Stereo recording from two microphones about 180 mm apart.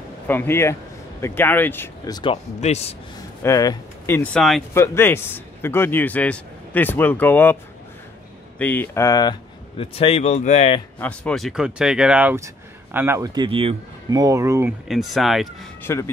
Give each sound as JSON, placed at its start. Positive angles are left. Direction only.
{"t": 0.3, "sound": "a man's voice", "side_deg": 10}
{"t": 2.6, "sound": "speech", "side_deg": 35}
{"t": 3.4, "sound": "a man's voice", "side_deg": 20}
{"t": 4.7, "sound": "a man's voice", "side_deg": 15}
{"t": 8.5, "sound": "speech", "side_deg": 10}
{"t": 11.0, "sound": "speech", "side_deg": 5}
{"t": 14.2, "sound": "speech", "side_deg": -15}
{"t": 14.9, "sound": "speech", "side_deg": 0}
{"t": 15.8, "sound": "speech", "side_deg": 15}